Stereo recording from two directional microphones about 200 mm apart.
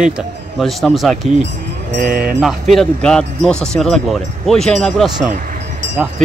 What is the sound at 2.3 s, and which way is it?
Speech, centre (ahead or behind).